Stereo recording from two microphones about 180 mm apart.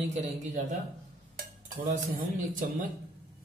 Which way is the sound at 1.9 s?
45° right (ahead or behind).